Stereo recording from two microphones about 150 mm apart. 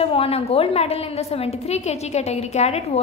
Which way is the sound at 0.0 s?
40° left (ahead or behind).